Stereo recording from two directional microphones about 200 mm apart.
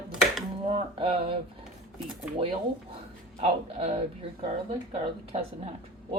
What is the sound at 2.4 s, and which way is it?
Speech, 30° right (ahead or behind).